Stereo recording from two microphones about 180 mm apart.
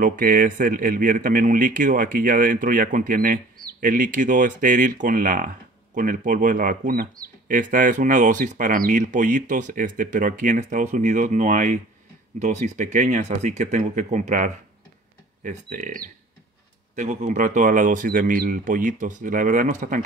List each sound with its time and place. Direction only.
0.0 s speech: 50° right (ahead or behind)